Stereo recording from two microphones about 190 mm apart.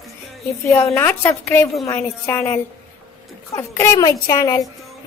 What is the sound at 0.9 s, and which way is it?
A woman's voice, 10° left (ahead or behind).